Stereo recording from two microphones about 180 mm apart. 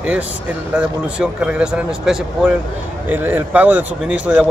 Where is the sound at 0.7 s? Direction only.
5° right (ahead or behind).